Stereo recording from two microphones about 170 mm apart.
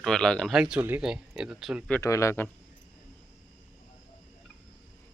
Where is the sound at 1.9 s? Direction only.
20° left (ahead or behind).